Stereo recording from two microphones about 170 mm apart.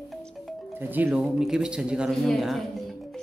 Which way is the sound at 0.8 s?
10° right (ahead or behind).